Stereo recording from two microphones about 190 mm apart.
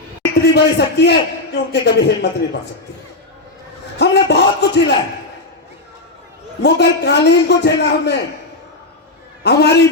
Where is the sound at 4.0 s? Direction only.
65° left (ahead or behind).